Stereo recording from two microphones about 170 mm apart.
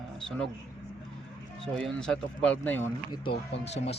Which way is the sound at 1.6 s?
5° left (ahead or behind).